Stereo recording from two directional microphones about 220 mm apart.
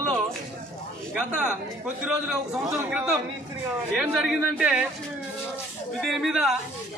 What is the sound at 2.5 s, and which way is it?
Speech, 15° right (ahead or behind).